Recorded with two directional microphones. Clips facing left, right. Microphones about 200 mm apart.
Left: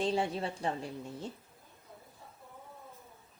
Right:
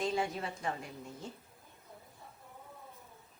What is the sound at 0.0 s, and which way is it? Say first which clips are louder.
Speech: left 3 dB; 30° left (ahead or behind).